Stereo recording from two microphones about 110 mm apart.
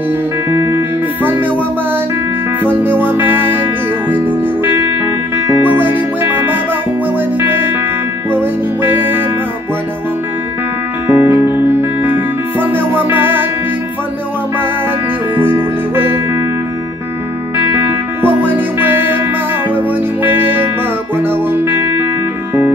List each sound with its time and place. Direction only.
0.5 s music: 20° right (ahead or behind)
2.6 s music: 20° right (ahead or behind)
11.1 s music: 20° right (ahead or behind)
15.3 s music: 20° right (ahead or behind)
18.2 s music: 20° right (ahead or behind)